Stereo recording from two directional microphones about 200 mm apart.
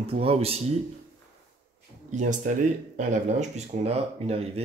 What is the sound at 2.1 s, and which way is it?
Speech, 40° right (ahead or behind).